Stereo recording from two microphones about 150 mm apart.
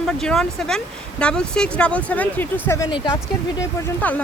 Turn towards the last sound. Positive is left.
turn(degrees=10)  # may be behind; listen again after turning